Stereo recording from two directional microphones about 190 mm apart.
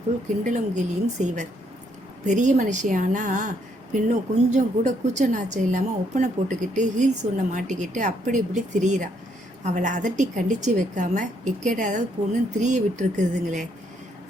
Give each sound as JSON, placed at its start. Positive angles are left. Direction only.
{"t": 0.4, "sound": "speech", "side_deg": -40}